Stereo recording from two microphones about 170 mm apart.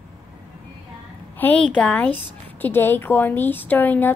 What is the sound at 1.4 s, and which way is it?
Speech, 5° left (ahead or behind).